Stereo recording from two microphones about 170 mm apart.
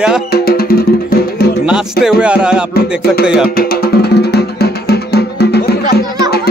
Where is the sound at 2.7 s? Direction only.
65° left (ahead or behind).